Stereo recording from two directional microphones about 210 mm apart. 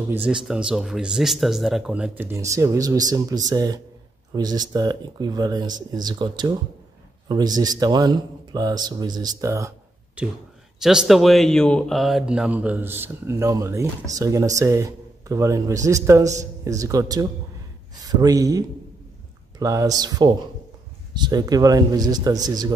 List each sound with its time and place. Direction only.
0.1 s speech: 5° right (ahead or behind)
10.8 s speech: centre (ahead or behind); by 22.7 s 20° right (ahead or behind)